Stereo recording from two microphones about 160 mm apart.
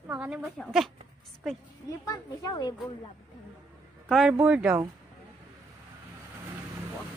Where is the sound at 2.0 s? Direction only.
20° left (ahead or behind).